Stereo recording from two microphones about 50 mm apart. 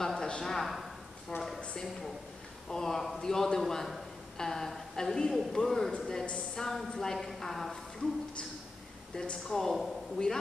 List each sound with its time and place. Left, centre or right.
0.0 s a sound: centre
1.3 s speech: left
2.7 s a man's voice: centre
9.1 s a man's voice: centre